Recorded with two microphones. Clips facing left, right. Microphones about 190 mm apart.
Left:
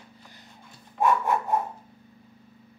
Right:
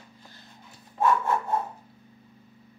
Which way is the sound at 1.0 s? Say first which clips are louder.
Left 1 dB; 15° left (ahead or behind).